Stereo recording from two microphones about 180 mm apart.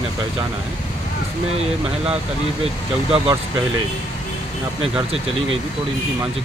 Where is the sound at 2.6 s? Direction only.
35° right (ahead or behind).